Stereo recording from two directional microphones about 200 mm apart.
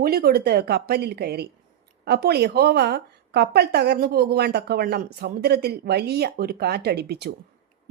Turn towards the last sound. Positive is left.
turn(degrees=-55)  # may be behind; listen again after turning